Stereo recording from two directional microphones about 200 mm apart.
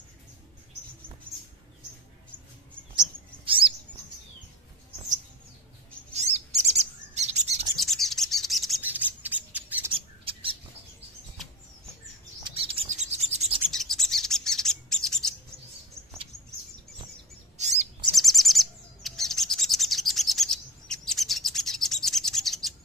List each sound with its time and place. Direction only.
1.3 s rodents: 10° right (ahead or behind)
3.0 s a sound: 25° right (ahead or behind)
6.1 s bird: 35° right (ahead or behind)
7.7 s bird: centre (ahead or behind)
9.9 s squawk: 25° right (ahead or behind)
12.4 s bird: 30° right (ahead or behind)
12.9 s rub: 35° right (ahead or behind)
13.7 s bird: centre (ahead or behind)
17.6 s chirp: 35° right (ahead or behind)
18.1 s bird: centre (ahead or behind)